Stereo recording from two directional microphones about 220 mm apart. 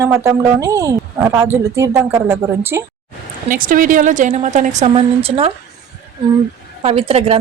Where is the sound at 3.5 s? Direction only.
40° right (ahead or behind).